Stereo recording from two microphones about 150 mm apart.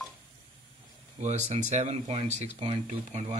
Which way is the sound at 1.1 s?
50° right (ahead or behind).